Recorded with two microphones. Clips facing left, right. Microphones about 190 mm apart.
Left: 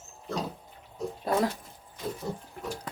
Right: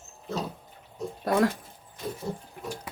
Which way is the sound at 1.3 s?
80° right.